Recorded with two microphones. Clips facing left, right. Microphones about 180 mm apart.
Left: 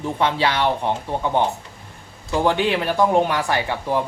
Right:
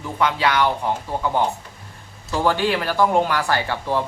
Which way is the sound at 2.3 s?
20° left (ahead or behind).